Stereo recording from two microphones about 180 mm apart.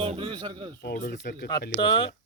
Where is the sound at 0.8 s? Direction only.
55° left (ahead or behind).